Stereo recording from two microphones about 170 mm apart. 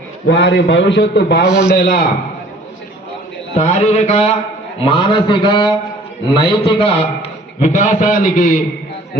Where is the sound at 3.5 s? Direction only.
40° left (ahead or behind).